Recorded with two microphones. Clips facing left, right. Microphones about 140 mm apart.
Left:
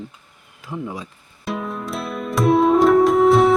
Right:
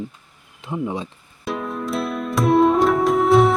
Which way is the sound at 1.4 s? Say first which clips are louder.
Right 1 dB; centre (ahead or behind).